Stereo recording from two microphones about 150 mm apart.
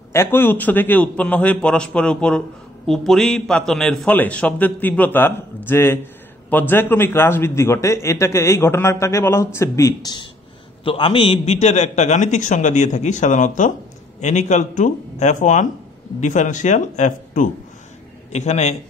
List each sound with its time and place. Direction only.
0.1 s a man's voice: 15° left (ahead or behind)
10.8 s a man's voice: 35° left (ahead or behind)